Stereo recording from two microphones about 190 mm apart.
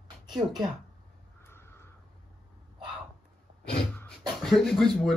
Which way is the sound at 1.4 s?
15° left (ahead or behind).